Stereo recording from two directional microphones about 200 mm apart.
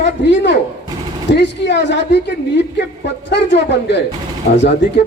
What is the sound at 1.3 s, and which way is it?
A woman's voice, 60° left (ahead or behind).